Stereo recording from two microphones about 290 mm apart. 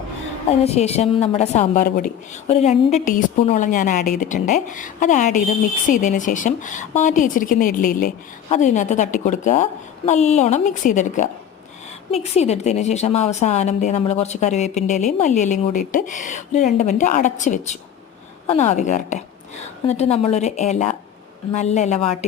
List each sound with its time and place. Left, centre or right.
0.6 s a woman's voice: left